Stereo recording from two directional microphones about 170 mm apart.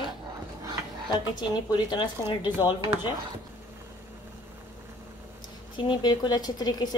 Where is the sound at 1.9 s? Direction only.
25° left (ahead or behind).